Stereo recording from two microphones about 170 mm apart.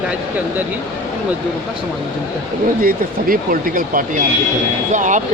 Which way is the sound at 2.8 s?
55° right (ahead or behind).